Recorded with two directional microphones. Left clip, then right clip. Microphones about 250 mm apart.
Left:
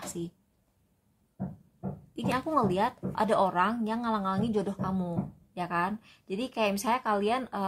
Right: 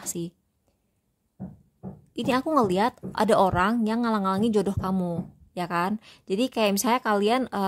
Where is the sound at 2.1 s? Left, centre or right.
Right.